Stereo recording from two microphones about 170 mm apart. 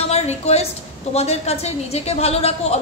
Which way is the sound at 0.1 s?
40° left (ahead or behind).